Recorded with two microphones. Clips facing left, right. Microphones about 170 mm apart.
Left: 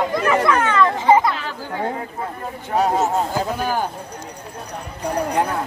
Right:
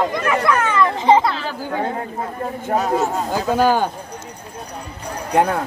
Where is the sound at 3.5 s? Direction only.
85° right.